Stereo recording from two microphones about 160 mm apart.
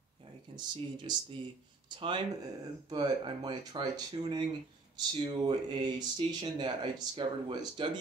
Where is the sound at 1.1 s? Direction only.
25° right (ahead or behind).